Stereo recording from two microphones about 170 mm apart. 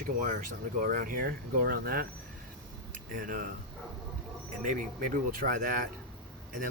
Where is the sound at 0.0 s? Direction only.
55° right (ahead or behind).